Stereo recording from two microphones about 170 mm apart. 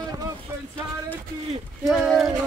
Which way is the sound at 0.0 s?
20° right (ahead or behind).